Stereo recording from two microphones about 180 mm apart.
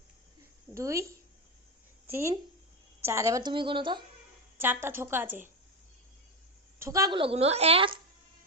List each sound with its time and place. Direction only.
0.7 s a woman's voice: 15° right (ahead or behind)
4.5 s a woman's voice: 10° right (ahead or behind)
6.7 s a woman's voice: 15° right (ahead or behind)
7.2 s speech: 35° right (ahead or behind)